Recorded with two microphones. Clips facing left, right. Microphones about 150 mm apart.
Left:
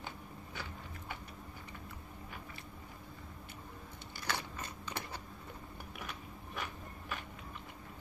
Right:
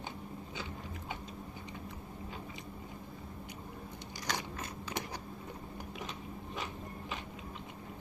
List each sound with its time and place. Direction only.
4.3 s biting: 10° right (ahead or behind)